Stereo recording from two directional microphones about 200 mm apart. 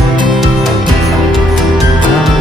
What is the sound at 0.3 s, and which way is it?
Music, centre (ahead or behind).